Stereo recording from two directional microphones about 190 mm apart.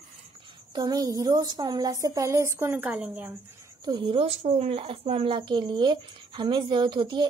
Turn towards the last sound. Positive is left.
turn(degrees=-25)  # may be behind; listen again after turning